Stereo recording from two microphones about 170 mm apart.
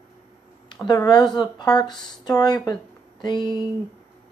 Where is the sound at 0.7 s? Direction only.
25° left (ahead or behind).